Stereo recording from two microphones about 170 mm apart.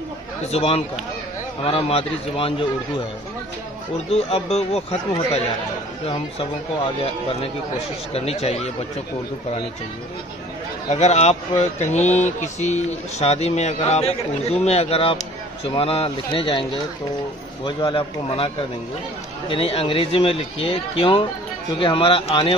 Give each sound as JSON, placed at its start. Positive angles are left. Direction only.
{"t": 0.5, "sound": "speech", "side_deg": 35}
{"t": 4.1, "sound": "speech", "side_deg": 35}
{"t": 8.1, "sound": "speech", "side_deg": 35}
{"t": 10.9, "sound": "speech", "side_deg": 40}
{"t": 17.6, "sound": "speech", "side_deg": 30}